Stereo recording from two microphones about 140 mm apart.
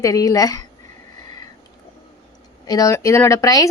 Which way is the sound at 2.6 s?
25° left (ahead or behind).